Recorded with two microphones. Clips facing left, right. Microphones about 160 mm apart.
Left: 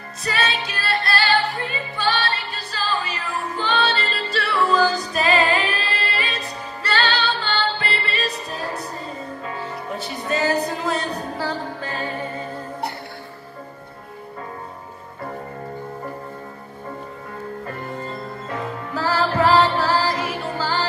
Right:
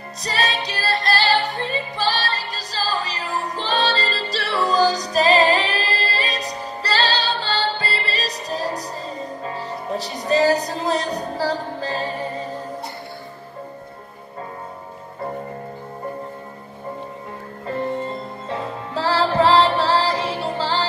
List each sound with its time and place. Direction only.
0.2 s music: 35° right (ahead or behind)
17.6 s music: 25° right (ahead or behind)